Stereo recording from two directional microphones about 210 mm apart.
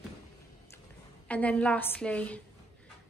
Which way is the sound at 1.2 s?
5° left (ahead or behind).